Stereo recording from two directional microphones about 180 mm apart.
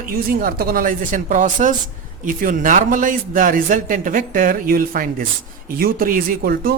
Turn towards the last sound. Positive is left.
turn(degrees=-55)  # may be behind; listen again after turning